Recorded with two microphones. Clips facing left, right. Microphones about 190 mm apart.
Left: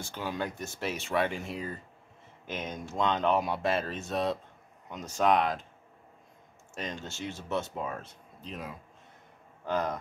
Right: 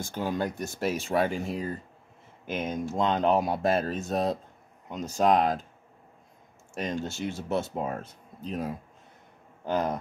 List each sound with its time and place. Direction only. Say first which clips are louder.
0.0 s speech: right 5 dB; 45° right (ahead or behind)
2.5 s speech: right 6 dB; 10° right (ahead or behind)
2.8 s speech: right 2 dB; 40° right (ahead or behind)
6.8 s speech: right 6 dB; 40° right (ahead or behind)